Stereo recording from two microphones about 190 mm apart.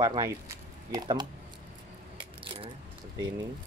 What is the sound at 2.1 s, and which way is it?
Coin, 25° right (ahead or behind).